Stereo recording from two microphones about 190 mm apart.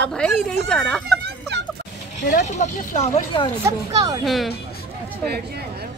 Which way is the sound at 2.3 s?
40° left (ahead or behind).